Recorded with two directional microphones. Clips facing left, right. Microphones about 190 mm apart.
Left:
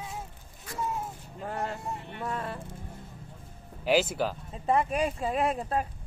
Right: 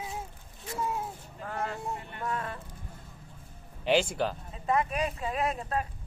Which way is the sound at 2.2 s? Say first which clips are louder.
Left 1 dB; 30° left (ahead or behind).